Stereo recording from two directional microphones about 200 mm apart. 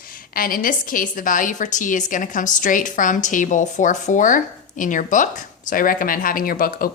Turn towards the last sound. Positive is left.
turn(degrees=45)  # may be behind; listen again after turning